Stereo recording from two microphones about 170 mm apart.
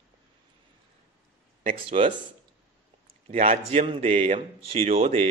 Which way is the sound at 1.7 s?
35° right (ahead or behind).